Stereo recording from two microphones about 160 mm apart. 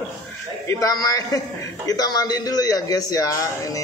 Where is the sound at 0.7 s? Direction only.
20° left (ahead or behind).